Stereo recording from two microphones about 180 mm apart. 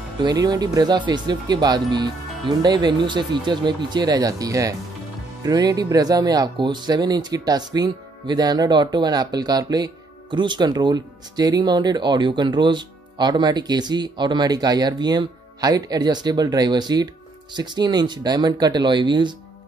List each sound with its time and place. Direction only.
0.2 s speech: 20° right (ahead or behind)